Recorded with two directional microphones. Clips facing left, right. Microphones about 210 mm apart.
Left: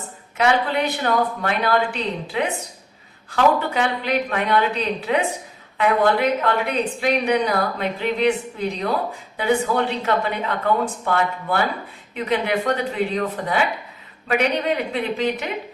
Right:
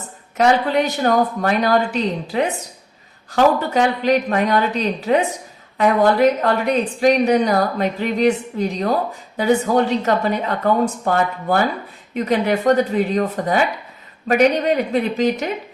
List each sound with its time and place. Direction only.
0.3 s a woman's voice: 40° right (ahead or behind)